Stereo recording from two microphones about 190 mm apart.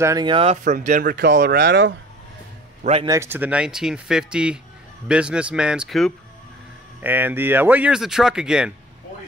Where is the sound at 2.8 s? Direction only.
30° right (ahead or behind).